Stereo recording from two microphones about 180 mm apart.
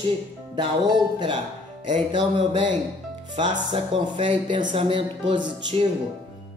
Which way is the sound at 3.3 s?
25° right (ahead or behind).